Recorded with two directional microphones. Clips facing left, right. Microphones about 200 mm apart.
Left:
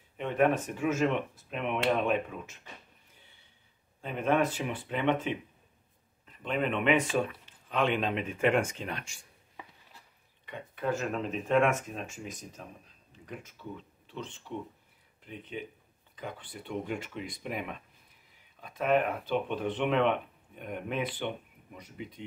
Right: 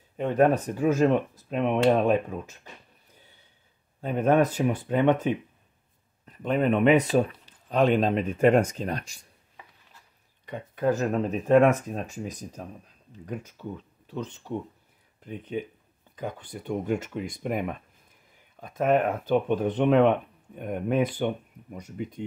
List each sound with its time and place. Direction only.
0.2 s speech: 40° right (ahead or behind)
4.0 s speech: 40° right (ahead or behind)
10.4 s speech: 40° right (ahead or behind)